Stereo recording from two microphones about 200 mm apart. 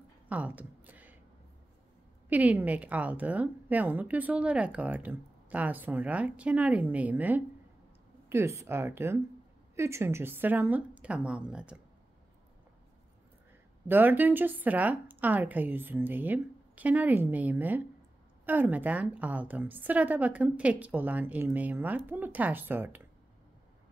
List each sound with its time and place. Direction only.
0.3 s a sound: 10° right (ahead or behind)
2.2 s a woman's voice: 10° right (ahead or behind)
13.8 s a woman's voice: 10° right (ahead or behind)